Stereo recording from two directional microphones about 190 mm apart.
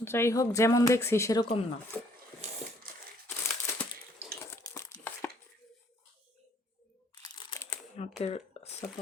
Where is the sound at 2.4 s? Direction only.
35° right (ahead or behind).